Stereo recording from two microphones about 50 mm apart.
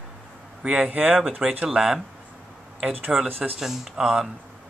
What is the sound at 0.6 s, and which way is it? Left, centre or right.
Speech, centre.